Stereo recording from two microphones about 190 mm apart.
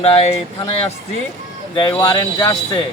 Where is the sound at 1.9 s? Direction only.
15° left (ahead or behind).